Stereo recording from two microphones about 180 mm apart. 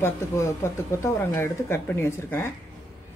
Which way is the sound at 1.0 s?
15° left (ahead or behind).